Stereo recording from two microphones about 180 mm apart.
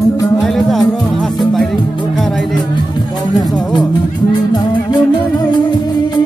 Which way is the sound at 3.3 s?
20° left (ahead or behind).